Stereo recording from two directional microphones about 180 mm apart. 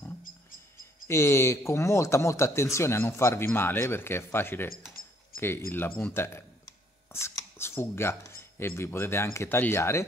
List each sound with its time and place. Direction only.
1.0 s speech: 15° left (ahead or behind)
5.0 s a sound: 55° left (ahead or behind)
5.7 s speech: 10° left (ahead or behind)